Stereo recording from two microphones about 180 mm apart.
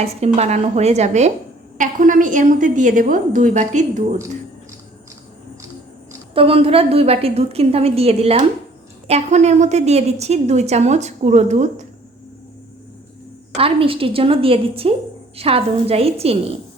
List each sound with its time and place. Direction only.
0.0 s a woman's voice: 35° right (ahead or behind)
6.3 s a woman's voice: 30° right (ahead or behind)
13.6 s a woman's voice: 30° right (ahead or behind)